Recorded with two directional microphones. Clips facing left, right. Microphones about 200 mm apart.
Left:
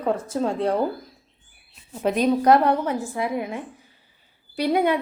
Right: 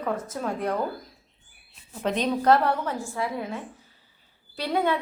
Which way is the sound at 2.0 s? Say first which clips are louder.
Left 4 dB; 10° left (ahead or behind).